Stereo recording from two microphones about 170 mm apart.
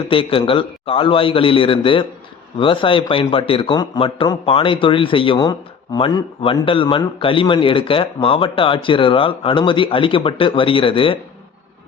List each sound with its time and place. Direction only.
0.1 s a man's voice: 30° left (ahead or behind)